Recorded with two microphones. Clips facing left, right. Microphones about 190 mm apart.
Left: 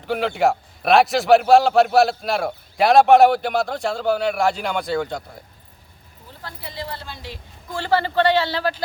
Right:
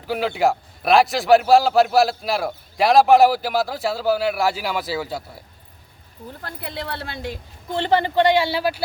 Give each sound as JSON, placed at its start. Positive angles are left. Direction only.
{"t": 0.0, "sound": "a man's voice", "side_deg": 0}
{"t": 6.4, "sound": "speech", "side_deg": -55}
{"t": 7.7, "sound": "a man's voice", "side_deg": -20}